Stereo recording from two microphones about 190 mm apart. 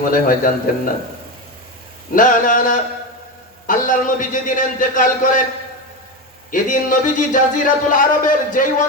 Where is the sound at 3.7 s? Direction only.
45° left (ahead or behind).